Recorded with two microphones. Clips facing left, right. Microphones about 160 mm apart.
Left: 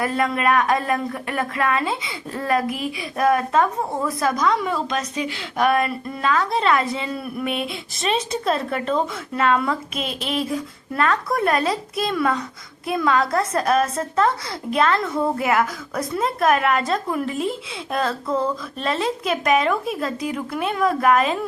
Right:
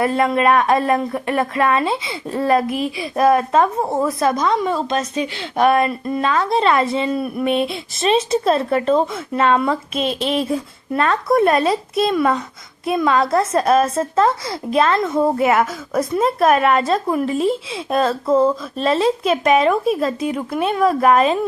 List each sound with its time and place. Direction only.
0.0 s speech: 30° right (ahead or behind)